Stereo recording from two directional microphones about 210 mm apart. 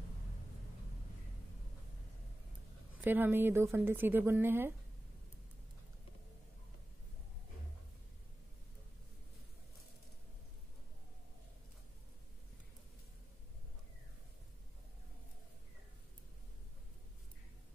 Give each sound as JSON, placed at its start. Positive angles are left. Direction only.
{"t": 3.0, "sound": "speech", "side_deg": -10}